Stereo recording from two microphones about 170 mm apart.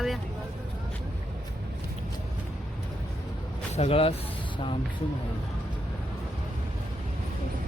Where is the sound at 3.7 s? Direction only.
35° left (ahead or behind).